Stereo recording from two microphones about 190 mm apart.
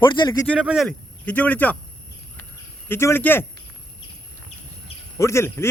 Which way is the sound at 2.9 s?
10° left (ahead or behind).